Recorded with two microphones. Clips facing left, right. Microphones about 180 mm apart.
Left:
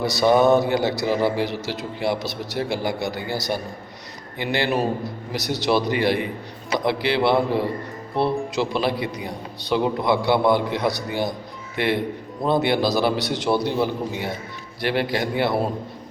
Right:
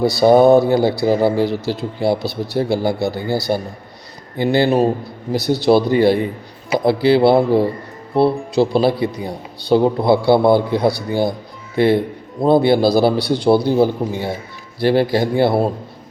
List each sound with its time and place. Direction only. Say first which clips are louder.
0.0 s a man's voice: right 6 dB; 30° right (ahead or behind)